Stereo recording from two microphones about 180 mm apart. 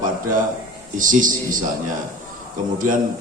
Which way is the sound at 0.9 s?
50° right (ahead or behind).